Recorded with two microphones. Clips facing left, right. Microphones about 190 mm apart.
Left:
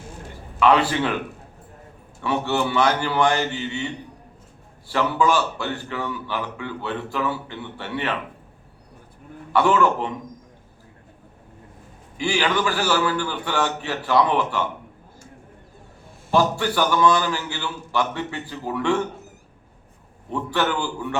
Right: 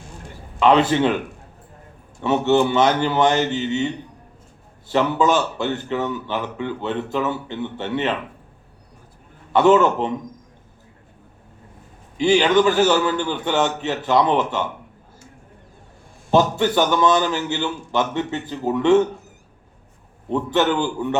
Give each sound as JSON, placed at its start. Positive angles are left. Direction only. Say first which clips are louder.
{"t": 0.6, "sound": "a man's voice", "louder": "right 3 dB", "side_deg": -20}
{"t": 2.2, "sound": "a man's voice", "louder": "right 6 dB", "side_deg": -20}
{"t": 4.9, "sound": "a man's voice", "louder": "right 3 dB", "side_deg": -20}
{"t": 9.5, "sound": "a man's voice", "louder": "right 4 dB", "side_deg": -20}
{"t": 12.1, "sound": "a man's voice", "louder": "right 7 dB", "side_deg": -20}
{"t": 16.3, "sound": "a man's voice", "louder": "right 3 dB", "side_deg": -20}
{"t": 20.3, "sound": "a man's voice", "louder": "right 5 dB", "side_deg": -20}